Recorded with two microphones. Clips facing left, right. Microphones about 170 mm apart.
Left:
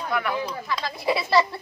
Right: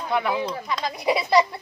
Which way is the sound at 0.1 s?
25° right (ahead or behind).